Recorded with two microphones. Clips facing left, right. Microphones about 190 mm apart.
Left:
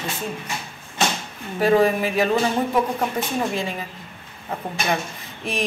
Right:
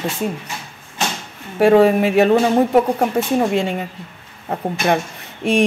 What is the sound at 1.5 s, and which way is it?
Speech, 65° right (ahead or behind).